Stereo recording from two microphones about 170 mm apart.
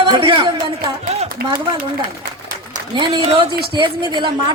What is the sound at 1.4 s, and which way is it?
Speech, 65° right (ahead or behind).